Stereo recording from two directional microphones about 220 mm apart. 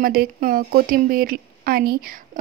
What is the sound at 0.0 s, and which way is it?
Speech, 40° right (ahead or behind).